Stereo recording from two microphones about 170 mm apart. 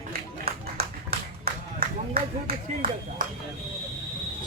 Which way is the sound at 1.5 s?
65° right (ahead or behind).